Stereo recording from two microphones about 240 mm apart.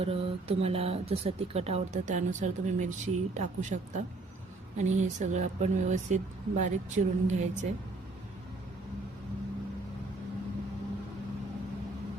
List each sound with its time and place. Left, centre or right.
0.0 s speech: right